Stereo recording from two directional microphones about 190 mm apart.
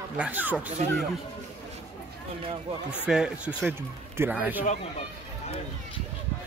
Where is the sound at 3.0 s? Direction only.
5° right (ahead or behind).